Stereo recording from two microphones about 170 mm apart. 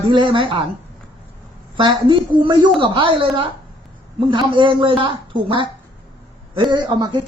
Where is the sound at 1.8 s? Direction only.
30° right (ahead or behind).